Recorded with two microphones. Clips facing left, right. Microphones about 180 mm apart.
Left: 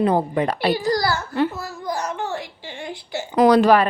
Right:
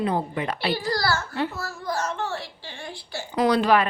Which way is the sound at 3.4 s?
45° left (ahead or behind).